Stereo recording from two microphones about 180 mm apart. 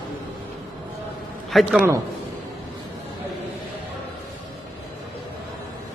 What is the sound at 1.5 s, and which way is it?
Speech, centre (ahead or behind).